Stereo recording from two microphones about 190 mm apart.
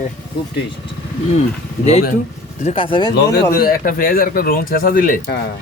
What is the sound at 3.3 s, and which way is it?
Speech, 50° left (ahead or behind).